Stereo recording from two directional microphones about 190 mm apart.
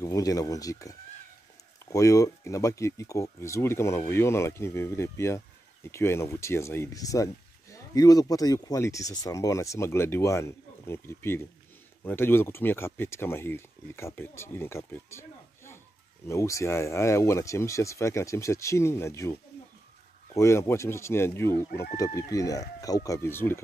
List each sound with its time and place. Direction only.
0.0 s speech: 20° left (ahead or behind)
20.3 s speech: 15° left (ahead or behind)